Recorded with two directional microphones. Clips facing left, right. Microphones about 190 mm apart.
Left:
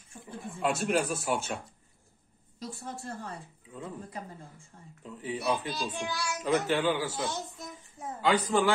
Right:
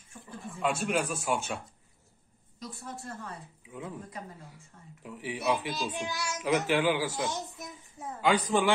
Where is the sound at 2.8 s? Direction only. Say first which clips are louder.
Left 1 dB; 30° left (ahead or behind).